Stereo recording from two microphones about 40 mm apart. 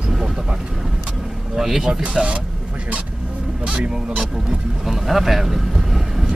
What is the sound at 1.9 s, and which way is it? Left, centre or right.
Speech, right.